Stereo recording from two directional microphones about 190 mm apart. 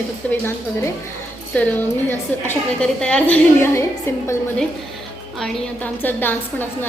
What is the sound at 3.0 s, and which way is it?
Speech, 5° left (ahead or behind).